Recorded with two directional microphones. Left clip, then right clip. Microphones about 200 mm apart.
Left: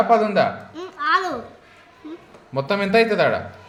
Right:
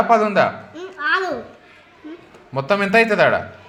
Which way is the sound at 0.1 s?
15° right (ahead or behind).